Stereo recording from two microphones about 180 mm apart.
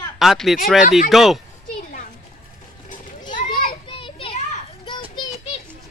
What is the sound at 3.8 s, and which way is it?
Children playing, 30° left (ahead or behind).